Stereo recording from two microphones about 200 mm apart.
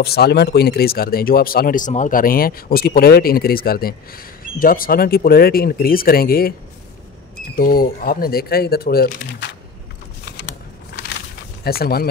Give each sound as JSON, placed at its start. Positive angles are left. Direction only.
{"t": 0.0, "sound": "speech", "side_deg": 50}
{"t": 7.5, "sound": "speech", "side_deg": 50}
{"t": 11.6, "sound": "speech", "side_deg": 50}